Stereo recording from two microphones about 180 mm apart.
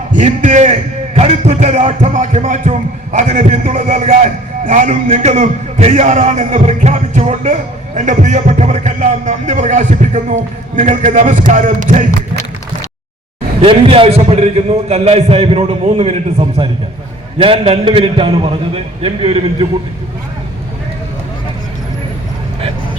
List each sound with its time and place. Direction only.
0.1 s a man's voice: 45° right (ahead or behind)
13.6 s a man's voice: 30° right (ahead or behind)